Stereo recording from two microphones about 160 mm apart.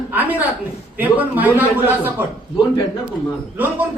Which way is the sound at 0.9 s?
10° right (ahead or behind).